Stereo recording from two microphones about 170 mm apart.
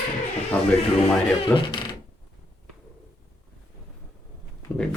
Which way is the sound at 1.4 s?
25° left (ahead or behind).